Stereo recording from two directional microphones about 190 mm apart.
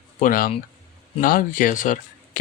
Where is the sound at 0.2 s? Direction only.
50° left (ahead or behind).